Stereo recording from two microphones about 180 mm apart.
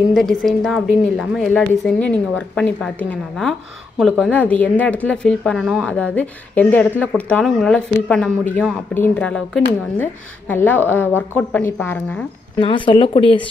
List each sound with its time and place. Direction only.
0.1 s a woman's voice: centre (ahead or behind)
12.5 s speech: 30° left (ahead or behind)